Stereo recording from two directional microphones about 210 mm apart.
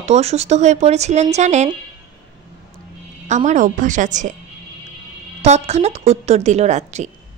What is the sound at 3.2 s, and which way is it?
A woman's voice, 35° right (ahead or behind).